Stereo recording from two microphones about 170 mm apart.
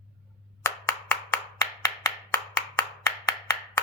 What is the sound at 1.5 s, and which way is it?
Clapping, 20° left (ahead or behind).